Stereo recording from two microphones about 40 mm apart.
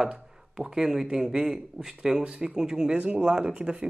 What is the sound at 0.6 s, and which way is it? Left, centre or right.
Speech, centre.